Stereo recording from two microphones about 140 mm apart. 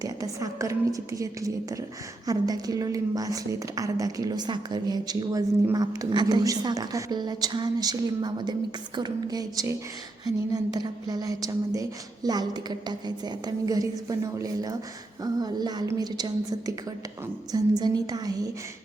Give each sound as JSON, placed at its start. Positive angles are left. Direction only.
{"t": 0.0, "sound": "a woman's voice", "side_deg": -25}